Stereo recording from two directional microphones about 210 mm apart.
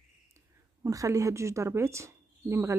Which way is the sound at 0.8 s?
15° right (ahead or behind).